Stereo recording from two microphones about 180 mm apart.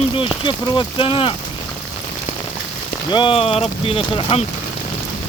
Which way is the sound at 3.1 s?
30° left (ahead or behind).